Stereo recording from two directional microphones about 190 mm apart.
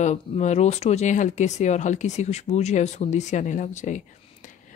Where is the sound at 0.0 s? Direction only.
35° left (ahead or behind).